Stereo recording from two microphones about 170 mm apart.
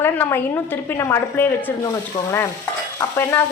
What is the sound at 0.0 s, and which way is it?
Speech, 15° left (ahead or behind).